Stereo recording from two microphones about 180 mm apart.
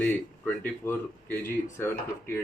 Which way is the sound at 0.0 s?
10° left (ahead or behind).